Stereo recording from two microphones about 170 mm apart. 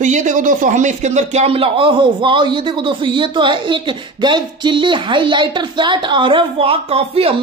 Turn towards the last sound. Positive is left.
turn(degrees=-35)  # may be behind; listen again after turning